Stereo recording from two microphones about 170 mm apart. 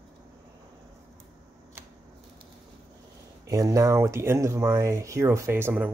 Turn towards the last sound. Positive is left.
turn(degrees=-10)  # may be behind; listen again after turning